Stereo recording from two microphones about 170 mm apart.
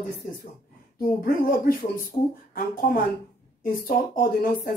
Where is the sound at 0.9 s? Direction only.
55° left (ahead or behind).